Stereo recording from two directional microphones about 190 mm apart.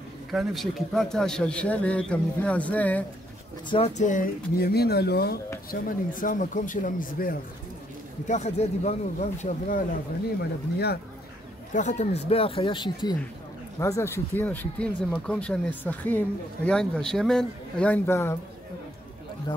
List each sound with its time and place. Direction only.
0.3 s a man's voice: centre (ahead or behind)
3.7 s speech: 35° left (ahead or behind); by 5.4 s 60° left (ahead or behind)
5.7 s speech: 45° left (ahead or behind)
8.3 s speech: 35° left (ahead or behind)
11.7 s speech: 40° left (ahead or behind); by 18.4 s 15° left (ahead or behind)